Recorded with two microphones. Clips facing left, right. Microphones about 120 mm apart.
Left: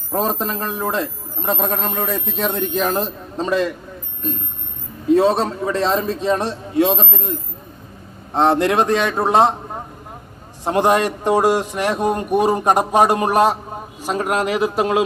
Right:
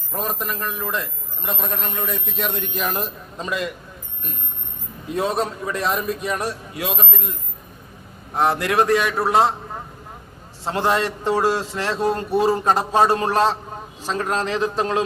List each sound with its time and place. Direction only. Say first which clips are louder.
0.1 s a man's voice: left 6 dB; 30° left (ahead or behind)
5.1 s a man's voice: left 7 dB; 30° left (ahead or behind); by 15.0 s 15° left (ahead or behind)